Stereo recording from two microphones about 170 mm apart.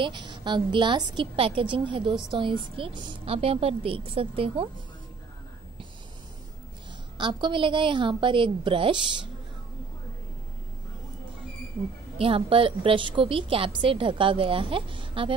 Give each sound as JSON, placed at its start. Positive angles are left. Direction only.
{"t": 0.0, "sound": "a woman's voice", "side_deg": -25}
{"t": 7.2, "sound": "a woman's voice", "side_deg": -30}
{"t": 12.2, "sound": "a woman's voice", "side_deg": -30}